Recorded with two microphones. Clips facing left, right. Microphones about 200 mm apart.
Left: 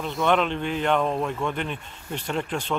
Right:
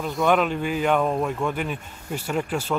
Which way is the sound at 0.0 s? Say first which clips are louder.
Right 2 dB; centre (ahead or behind).